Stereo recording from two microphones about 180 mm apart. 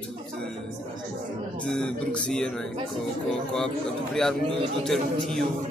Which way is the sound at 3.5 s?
5° left (ahead or behind).